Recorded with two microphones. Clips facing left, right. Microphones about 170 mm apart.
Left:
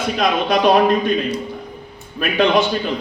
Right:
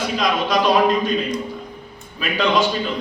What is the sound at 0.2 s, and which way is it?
Speech, 55° left (ahead or behind).